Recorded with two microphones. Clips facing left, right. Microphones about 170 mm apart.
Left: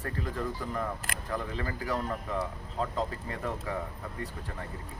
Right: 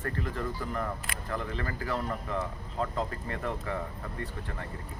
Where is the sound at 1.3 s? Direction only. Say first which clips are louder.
Even; 10° left (ahead or behind).